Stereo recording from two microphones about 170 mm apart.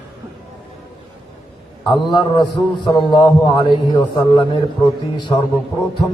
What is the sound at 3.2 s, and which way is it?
Speech, 25° left (ahead or behind).